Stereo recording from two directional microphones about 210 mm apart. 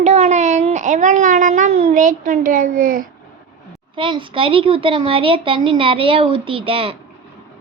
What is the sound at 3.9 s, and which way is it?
A woman's voice, 25° right (ahead or behind).